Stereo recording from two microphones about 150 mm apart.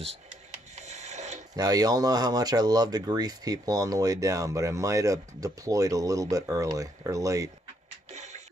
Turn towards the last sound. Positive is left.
turn(degrees=-20)  # may be behind; listen again after turning